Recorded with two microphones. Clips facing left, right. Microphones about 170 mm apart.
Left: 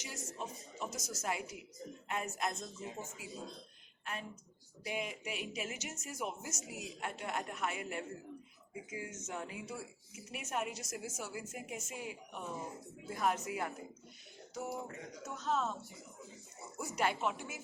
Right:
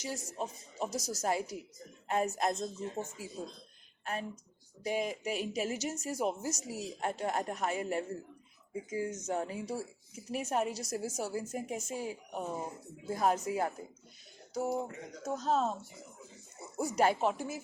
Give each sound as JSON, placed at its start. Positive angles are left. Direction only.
{"t": 0.0, "sound": "a woman's voice", "side_deg": -35}
{"t": 14.5, "sound": "a sound", "side_deg": -35}
{"t": 15.2, "sound": "speech", "side_deg": -35}
{"t": 16.7, "sound": "speech", "side_deg": -40}